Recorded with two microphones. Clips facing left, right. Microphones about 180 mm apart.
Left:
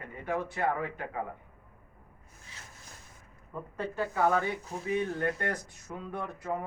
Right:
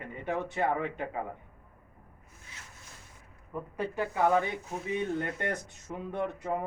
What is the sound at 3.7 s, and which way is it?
Speech, 15° right (ahead or behind).